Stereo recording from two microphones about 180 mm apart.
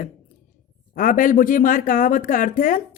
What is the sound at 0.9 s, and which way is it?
Speech, 50° left (ahead or behind).